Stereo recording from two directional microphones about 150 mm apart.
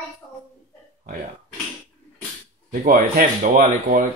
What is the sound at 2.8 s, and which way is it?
Speech, 65° right (ahead or behind).